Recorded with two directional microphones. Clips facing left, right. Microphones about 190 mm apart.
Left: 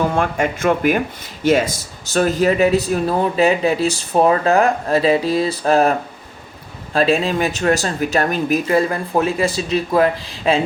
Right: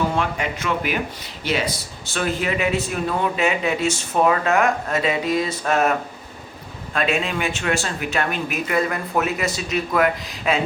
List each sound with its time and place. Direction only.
0.2 s speech: 50° left (ahead or behind); by 10.6 s 30° left (ahead or behind)